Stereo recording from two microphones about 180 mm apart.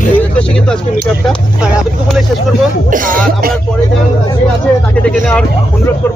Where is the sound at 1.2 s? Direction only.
Centre (ahead or behind).